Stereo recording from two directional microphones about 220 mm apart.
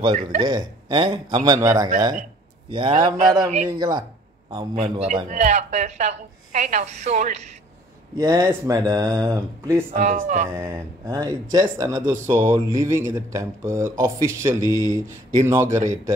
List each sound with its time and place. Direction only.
0.1 s a woman's voice: 40° right (ahead or behind)
0.4 s a man's voice: 20° right (ahead or behind)
4.8 s a woman's voice: 30° right (ahead or behind)
8.2 s speech: 15° right (ahead or behind)
9.9 s a woman's voice: 35° right (ahead or behind)
10.5 s speech: 10° right (ahead or behind)